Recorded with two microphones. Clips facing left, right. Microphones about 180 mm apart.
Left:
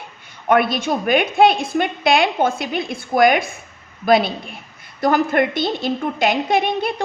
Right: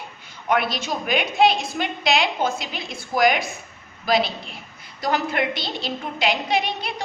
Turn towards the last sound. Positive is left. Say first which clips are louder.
# left 6 dB
turn(degrees=50)  # may be behind; listen again after turning